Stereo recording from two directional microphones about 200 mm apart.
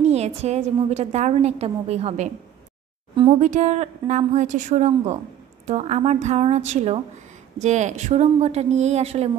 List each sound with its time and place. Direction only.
0.0 s a woman's voice: 35° right (ahead or behind)
3.3 s a woman's voice: 35° right (ahead or behind)